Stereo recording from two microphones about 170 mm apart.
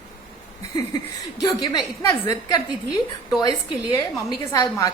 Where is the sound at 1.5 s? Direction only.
25° left (ahead or behind).